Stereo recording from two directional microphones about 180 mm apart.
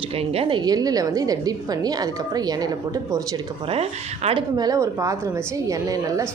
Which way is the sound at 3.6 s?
35° right (ahead or behind).